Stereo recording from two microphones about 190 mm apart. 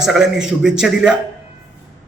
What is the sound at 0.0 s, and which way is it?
A man's voice, centre (ahead or behind).